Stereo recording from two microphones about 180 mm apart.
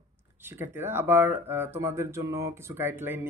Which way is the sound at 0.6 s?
10° right (ahead or behind).